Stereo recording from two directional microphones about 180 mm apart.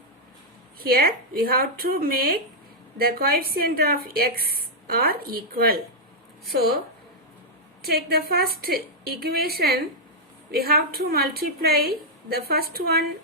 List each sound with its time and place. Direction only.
0.8 s speech: 55° right (ahead or behind)
7.8 s speech: 60° right (ahead or behind)